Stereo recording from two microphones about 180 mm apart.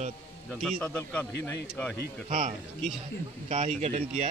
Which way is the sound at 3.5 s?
35° right (ahead or behind).